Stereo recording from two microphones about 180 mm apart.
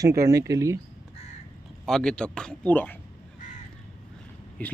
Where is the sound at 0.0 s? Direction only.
15° right (ahead or behind).